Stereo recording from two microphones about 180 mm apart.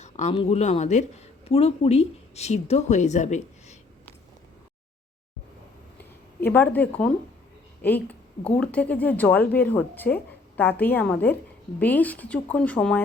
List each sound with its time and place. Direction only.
0.0 s speech: 40° left (ahead or behind)
6.4 s a woman's voice: 10° left (ahead or behind)